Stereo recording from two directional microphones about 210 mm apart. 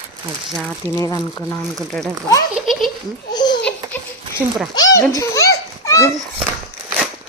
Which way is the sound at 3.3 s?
20° left (ahead or behind).